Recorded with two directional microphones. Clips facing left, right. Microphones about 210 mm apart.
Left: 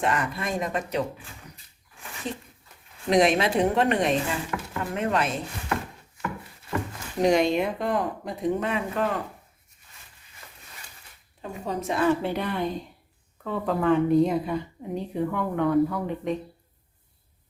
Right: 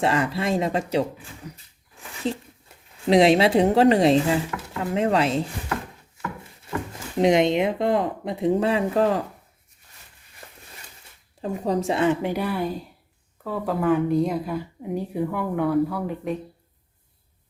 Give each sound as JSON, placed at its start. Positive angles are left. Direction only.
{"t": 0.0, "sound": "speech", "side_deg": -30}
{"t": 2.3, "sound": "speech", "side_deg": -30}
{"t": 7.2, "sound": "speech", "side_deg": -20}
{"t": 11.6, "sound": "a woman's voice", "side_deg": -30}